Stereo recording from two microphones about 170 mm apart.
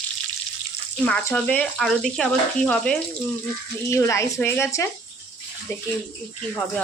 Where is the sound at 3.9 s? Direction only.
15° left (ahead or behind).